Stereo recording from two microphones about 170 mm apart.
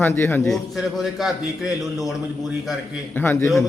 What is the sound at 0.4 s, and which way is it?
Speech, centre (ahead or behind).